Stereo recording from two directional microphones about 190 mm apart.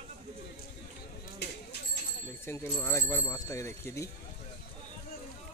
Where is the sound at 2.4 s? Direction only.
15° left (ahead or behind).